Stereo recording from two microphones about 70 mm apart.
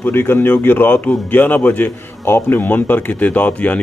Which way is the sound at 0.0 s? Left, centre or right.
Left.